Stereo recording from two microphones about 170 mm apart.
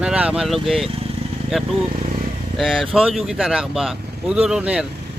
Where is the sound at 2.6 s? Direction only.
Centre (ahead or behind).